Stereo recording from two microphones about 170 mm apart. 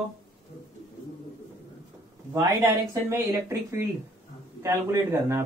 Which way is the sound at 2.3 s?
15° right (ahead or behind).